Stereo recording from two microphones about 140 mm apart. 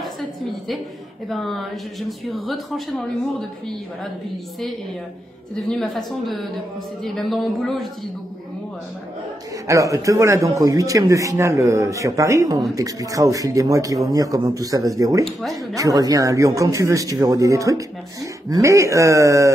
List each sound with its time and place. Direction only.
1.3 s speech: centre (ahead or behind)
5.7 s speech: 5° left (ahead or behind)
9.7 s speech: 25° right (ahead or behind)